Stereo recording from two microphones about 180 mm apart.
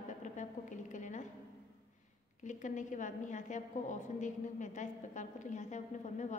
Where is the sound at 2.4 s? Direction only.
45° left (ahead or behind).